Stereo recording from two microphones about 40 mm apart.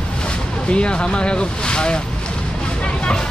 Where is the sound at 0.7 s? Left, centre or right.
Left.